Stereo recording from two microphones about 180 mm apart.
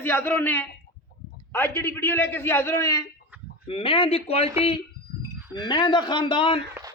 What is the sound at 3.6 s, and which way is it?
Speech, 30° left (ahead or behind).